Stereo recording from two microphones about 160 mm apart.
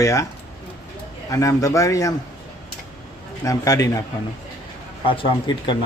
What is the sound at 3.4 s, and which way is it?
Speech, 20° left (ahead or behind).